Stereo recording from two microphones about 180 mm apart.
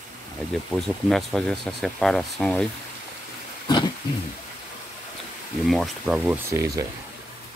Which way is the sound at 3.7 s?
25° left (ahead or behind).